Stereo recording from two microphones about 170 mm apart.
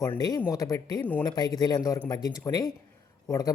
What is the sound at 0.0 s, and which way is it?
A man's voice, 20° left (ahead or behind).